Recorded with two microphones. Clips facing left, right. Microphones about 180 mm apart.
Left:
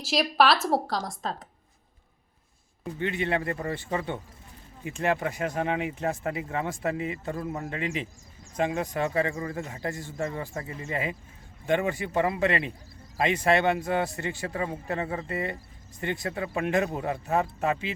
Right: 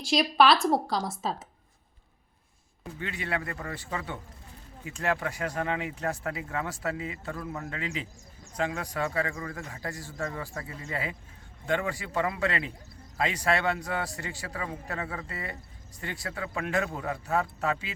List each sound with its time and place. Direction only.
0.0 s a woman's voice: centre (ahead or behind)
3.0 s speech: 25° left (ahead or behind)